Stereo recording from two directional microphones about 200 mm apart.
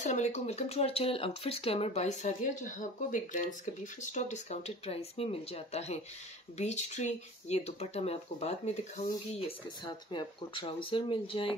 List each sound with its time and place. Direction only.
0.0 s speech: 35° left (ahead or behind)